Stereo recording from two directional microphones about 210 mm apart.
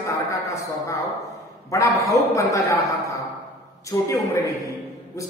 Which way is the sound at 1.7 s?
15° left (ahead or behind).